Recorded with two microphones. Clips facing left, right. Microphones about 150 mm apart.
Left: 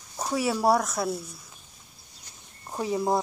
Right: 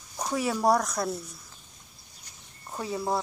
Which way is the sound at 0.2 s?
5° left (ahead or behind).